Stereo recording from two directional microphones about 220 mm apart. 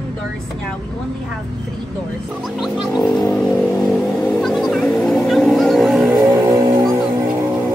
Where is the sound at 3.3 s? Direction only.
Centre (ahead or behind).